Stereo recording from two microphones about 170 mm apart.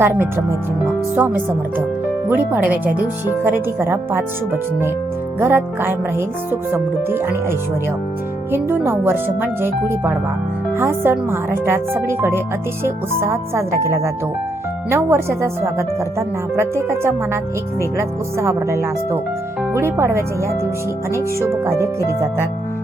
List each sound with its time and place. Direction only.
0.0 s speech: 15° right (ahead or behind)
8.5 s speech: 15° right (ahead or behind)